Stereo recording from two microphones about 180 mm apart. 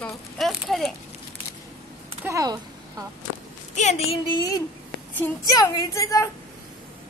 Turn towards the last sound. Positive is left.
turn(degrees=20)  # may be behind; listen again after turning